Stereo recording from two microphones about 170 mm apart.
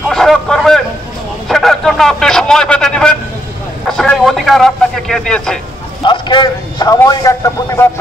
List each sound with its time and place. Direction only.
0.1 s a sound: centre (ahead or behind)
3.9 s vehicle: 5° left (ahead or behind)
6.0 s a man's voice: 25° left (ahead or behind)